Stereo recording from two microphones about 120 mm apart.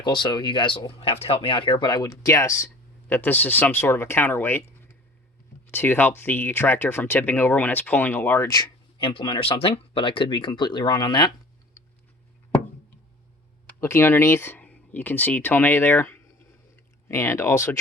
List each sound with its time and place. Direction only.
0.0 s speech: 40° left (ahead or behind)
0.9 s speech: 55° left (ahead or behind); by 8.7 s 30° left (ahead or behind)
9.0 s speech: 45° left (ahead or behind)
13.8 s speech: 20° left (ahead or behind)